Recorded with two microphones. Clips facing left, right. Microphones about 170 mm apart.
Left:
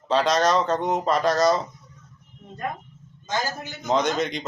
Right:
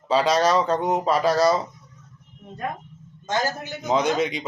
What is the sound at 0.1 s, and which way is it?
Speech, 5° right (ahead or behind).